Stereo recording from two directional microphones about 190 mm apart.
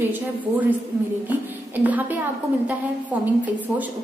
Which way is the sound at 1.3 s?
10° right (ahead or behind).